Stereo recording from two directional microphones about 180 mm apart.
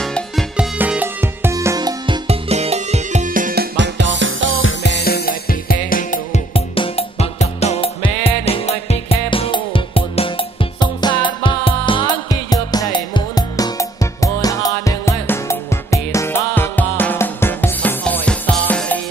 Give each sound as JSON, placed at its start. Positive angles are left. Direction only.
{"t": 0.0, "sound": "music", "side_deg": 0}
{"t": 0.7, "sound": "music", "side_deg": -10}
{"t": 2.2, "sound": "music", "side_deg": -35}
{"t": 3.7, "sound": "music", "side_deg": -85}
{"t": 4.6, "sound": "music", "side_deg": 80}
{"t": 6.5, "sound": "music", "side_deg": 30}